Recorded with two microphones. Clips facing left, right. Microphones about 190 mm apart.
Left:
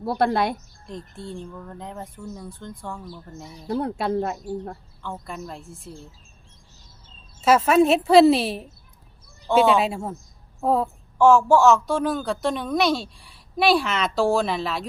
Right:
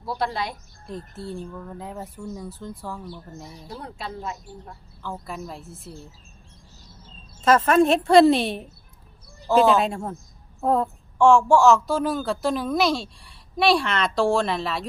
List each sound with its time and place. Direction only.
0.0 s speech: 60° left (ahead or behind)
0.9 s a woman's voice: 5° right (ahead or behind)
3.7 s speech: 55° left (ahead or behind)
5.0 s a woman's voice: 5° right (ahead or behind)
7.4 s a woman's voice: 10° left (ahead or behind)